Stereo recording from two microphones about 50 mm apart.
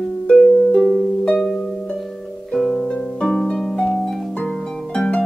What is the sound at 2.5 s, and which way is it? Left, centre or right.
Harp, centre.